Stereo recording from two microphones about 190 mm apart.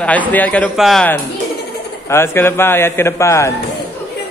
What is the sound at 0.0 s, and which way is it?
A man's voice, 10° left (ahead or behind).